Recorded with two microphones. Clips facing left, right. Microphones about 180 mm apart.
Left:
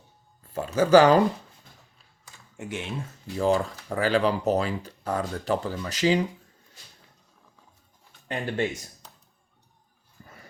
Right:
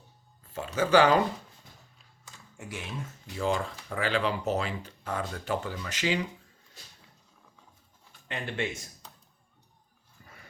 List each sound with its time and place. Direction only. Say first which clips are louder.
0.5 s speech: left 6 dB; 40° left (ahead or behind)
2.6 s speech: left 6 dB; 25° left (ahead or behind)
3.3 s speech: left 6 dB; 40° left (ahead or behind)
8.3 s speech: left 5 dB; 40° left (ahead or behind)
10.2 s wild animals: left 5 dB; 35° left (ahead or behind)